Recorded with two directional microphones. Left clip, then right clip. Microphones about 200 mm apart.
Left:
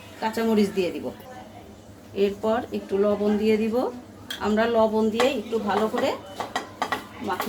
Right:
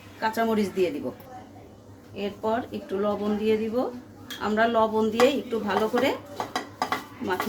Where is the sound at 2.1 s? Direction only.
20° left (ahead or behind).